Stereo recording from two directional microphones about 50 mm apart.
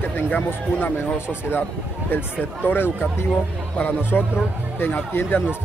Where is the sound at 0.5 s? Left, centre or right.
Left.